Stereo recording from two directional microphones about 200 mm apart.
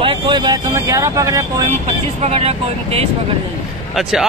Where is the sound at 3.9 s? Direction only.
Centre (ahead or behind).